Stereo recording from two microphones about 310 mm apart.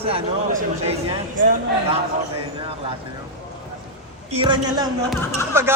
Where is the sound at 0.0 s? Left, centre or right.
Centre.